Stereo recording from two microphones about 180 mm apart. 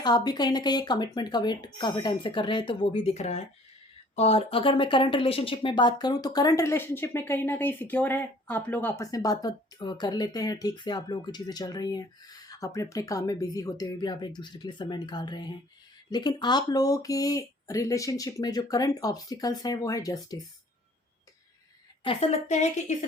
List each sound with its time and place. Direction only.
0.0 s speech: 25° left (ahead or behind)
22.0 s a woman's voice: 35° left (ahead or behind)